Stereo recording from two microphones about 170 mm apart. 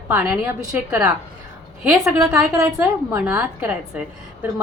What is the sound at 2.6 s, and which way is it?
A woman's voice, 15° right (ahead or behind).